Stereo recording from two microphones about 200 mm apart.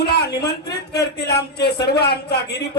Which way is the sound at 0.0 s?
55° left (ahead or behind).